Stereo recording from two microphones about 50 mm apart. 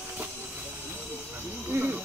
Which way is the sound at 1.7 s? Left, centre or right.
Right.